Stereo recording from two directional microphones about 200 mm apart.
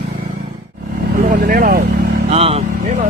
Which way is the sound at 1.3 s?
45° right (ahead or behind).